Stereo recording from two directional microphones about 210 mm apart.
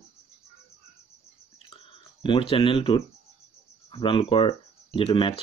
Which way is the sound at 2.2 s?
25° left (ahead or behind).